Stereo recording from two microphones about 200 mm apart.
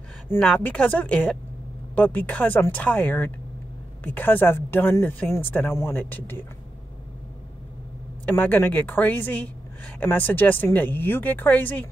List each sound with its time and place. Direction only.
0.3 s speech: 5° left (ahead or behind)
8.3 s speech: 10° left (ahead or behind)